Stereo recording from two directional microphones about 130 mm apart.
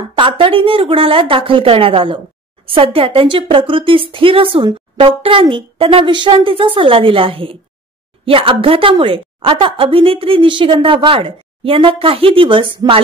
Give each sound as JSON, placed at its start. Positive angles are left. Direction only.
{"t": 0.2, "sound": "speech", "side_deg": -40}